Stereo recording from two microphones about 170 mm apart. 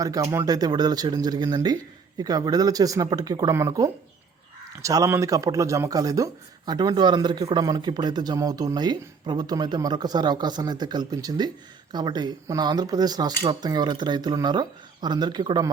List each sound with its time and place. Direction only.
0.0 s speech: 20° right (ahead or behind)